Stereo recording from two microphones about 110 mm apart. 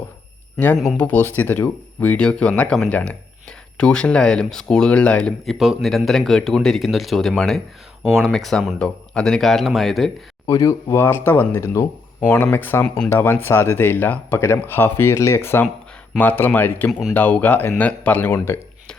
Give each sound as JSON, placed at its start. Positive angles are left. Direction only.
{"t": 0.9, "sound": "speech", "side_deg": 15}
{"t": 5.5, "sound": "speech", "side_deg": -5}
{"t": 10.5, "sound": "speech", "side_deg": 35}
{"t": 10.9, "sound": "speech", "side_deg": 20}